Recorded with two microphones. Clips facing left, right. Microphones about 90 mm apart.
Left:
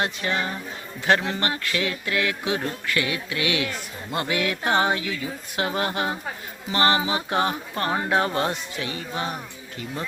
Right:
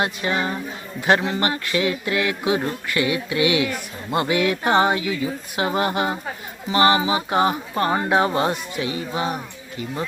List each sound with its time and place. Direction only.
0.0 s speech: 15° right (ahead or behind)
1.4 s music: 20° right (ahead or behind)
5.5 s speech: 20° right (ahead or behind)